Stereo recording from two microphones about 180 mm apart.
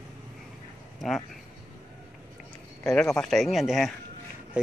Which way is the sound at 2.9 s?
5° left (ahead or behind).